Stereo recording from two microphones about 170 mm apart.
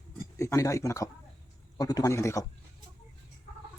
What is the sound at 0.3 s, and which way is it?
Speech, 15° left (ahead or behind).